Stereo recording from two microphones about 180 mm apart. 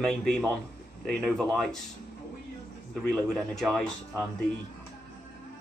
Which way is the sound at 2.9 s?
Centre (ahead or behind).